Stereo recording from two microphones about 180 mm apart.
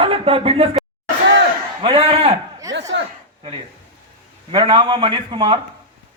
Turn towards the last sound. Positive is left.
turn(degrees=-25)  # may be behind; listen again after turning